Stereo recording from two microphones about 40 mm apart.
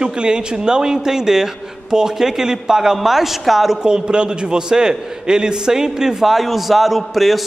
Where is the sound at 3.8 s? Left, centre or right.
Right; by 7.4 s centre.